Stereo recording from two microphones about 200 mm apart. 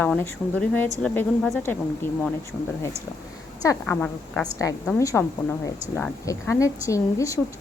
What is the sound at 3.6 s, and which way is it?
A woman's voice, 15° left (ahead or behind).